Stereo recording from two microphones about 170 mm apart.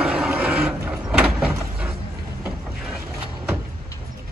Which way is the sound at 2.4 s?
5° right (ahead or behind).